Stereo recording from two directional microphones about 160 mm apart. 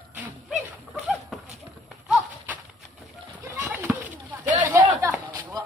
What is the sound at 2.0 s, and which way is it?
Horse, 10° right (ahead or behind).